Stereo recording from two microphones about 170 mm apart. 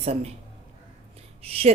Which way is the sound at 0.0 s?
35° right (ahead or behind).